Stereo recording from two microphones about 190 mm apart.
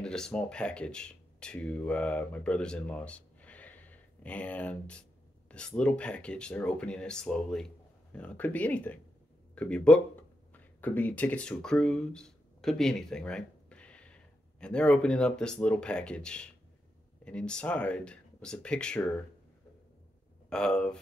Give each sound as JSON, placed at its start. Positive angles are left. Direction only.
{"t": 0.0, "sound": "speech", "side_deg": 5}
{"t": 20.4, "sound": "speech", "side_deg": 5}